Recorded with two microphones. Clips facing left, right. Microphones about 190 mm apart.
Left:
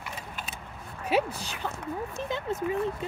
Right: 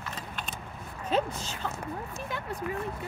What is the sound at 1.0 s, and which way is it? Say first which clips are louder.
Speech: left 2 dB; 10° left (ahead or behind).